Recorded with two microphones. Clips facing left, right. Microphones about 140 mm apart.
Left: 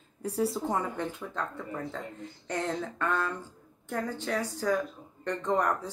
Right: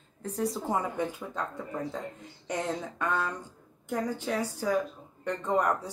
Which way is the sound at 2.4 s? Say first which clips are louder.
Even; 15° right (ahead or behind).